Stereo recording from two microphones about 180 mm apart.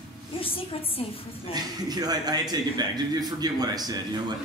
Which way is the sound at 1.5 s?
20° right (ahead or behind).